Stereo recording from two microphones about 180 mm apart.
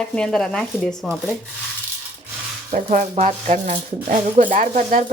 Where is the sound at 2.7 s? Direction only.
40° right (ahead or behind).